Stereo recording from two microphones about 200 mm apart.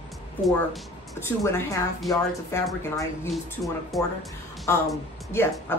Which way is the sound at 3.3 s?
Centre (ahead or behind).